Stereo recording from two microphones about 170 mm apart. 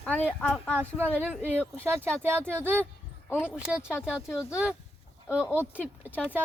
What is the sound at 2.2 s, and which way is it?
Speech, 15° right (ahead or behind).